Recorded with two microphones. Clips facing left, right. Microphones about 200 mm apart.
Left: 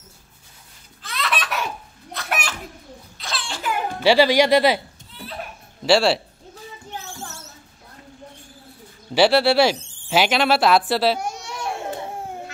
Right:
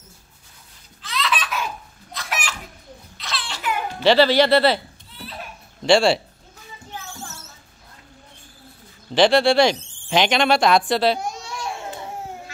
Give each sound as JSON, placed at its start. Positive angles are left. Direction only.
{"t": 1.0, "sound": "baby laughter", "side_deg": 55}
{"t": 2.1, "sound": "children playing", "side_deg": 60}
{"t": 3.3, "sound": "a sound", "side_deg": 45}
{"t": 4.0, "sound": "speech", "side_deg": 10}
{"t": 5.9, "sound": "speech", "side_deg": 5}
{"t": 9.1, "sound": "speech", "side_deg": 5}